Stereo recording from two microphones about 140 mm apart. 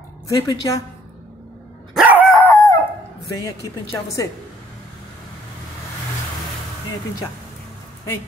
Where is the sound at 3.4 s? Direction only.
20° left (ahead or behind).